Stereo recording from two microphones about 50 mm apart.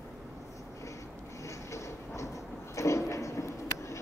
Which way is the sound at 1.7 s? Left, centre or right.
Left.